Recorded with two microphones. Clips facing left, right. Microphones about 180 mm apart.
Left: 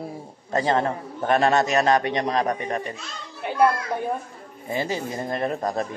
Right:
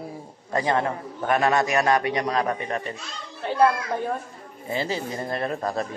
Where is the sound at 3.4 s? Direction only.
15° left (ahead or behind).